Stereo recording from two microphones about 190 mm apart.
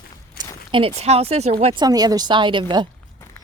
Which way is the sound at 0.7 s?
30° right (ahead or behind).